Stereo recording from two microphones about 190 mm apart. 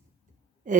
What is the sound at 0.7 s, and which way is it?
Speech, 40° right (ahead or behind).